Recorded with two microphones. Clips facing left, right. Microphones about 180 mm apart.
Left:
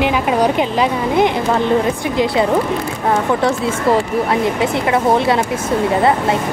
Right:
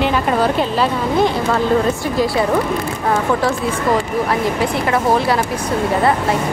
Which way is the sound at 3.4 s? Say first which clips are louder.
Left 2 dB; 25° left (ahead or behind).